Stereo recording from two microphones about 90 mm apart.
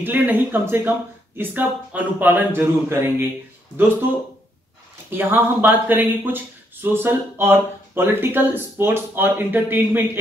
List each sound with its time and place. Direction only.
0.0 s speech: 20° right (ahead or behind)
5.1 s speech: 25° right (ahead or behind)